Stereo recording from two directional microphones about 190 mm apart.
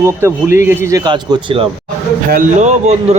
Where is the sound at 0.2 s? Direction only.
15° right (ahead or behind).